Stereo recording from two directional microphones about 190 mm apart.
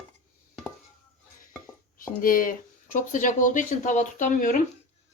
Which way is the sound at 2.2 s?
45° left (ahead or behind).